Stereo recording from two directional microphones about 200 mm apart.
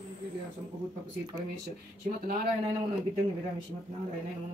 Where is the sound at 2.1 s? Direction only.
40° right (ahead or behind).